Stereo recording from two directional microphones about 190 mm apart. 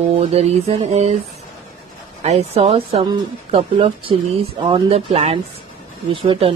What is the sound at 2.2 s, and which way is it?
Speech, 35° right (ahead or behind).